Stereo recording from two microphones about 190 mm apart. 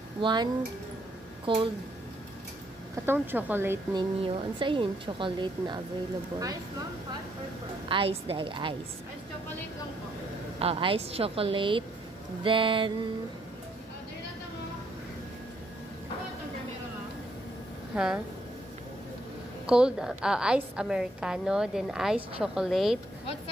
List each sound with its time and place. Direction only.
0.2 s a woman's voice: 25° right (ahead or behind)
3.1 s speech: 10° right (ahead or behind)
3.9 s a woman's voice: 25° right (ahead or behind)
7.9 s a woman's voice: 30° right (ahead or behind)
10.6 s a woman's voice: 30° right (ahead or behind)
17.9 s a woman's voice: 5° right (ahead or behind)
19.6 s a woman's voice: 5° right (ahead or behind)